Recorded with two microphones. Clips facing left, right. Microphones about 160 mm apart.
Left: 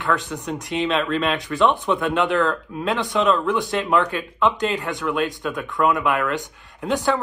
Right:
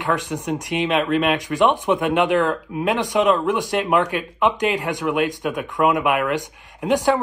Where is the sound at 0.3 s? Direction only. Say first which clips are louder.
Right 3 dB; 15° right (ahead or behind).